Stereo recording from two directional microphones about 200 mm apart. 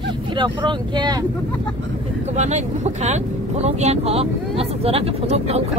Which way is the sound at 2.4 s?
35° right (ahead or behind).